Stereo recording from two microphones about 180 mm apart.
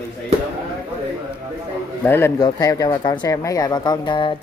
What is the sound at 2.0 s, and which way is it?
Speech, 15° left (ahead or behind).